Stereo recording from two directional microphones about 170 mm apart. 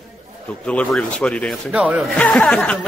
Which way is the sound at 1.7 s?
5° right (ahead or behind).